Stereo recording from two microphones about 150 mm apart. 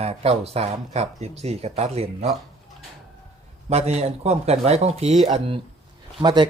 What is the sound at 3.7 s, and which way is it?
Speech, 45° right (ahead or behind).